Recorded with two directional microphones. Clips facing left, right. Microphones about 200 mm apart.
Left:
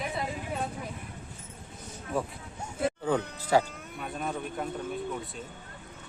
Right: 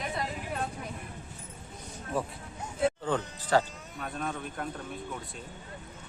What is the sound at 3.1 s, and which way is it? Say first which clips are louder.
Speech: left 2 dB; 10° left (ahead or behind).